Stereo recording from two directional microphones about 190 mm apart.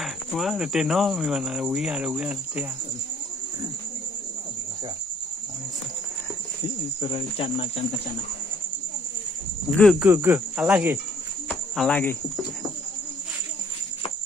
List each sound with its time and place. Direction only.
0.0 s speech: centre (ahead or behind)
7.0 s speech: 30° left (ahead or behind)
9.8 s speech: centre (ahead or behind)
10.0 s cricket: 10° right (ahead or behind)
11.7 s speech: 5° left (ahead or behind)